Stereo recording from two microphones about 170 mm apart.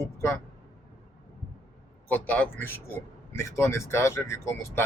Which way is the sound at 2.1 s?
10° left (ahead or behind).